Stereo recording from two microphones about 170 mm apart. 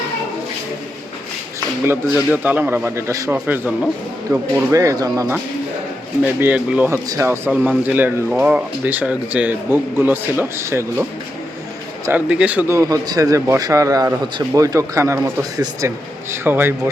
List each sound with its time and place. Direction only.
1.8 s speech: 10° right (ahead or behind)
6.4 s speech: 10° right (ahead or behind)
12.0 s speech: 10° right (ahead or behind)